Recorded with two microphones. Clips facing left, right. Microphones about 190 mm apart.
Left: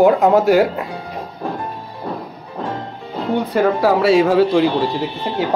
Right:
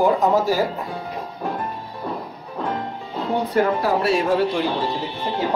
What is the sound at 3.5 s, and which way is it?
Speech, 90° left.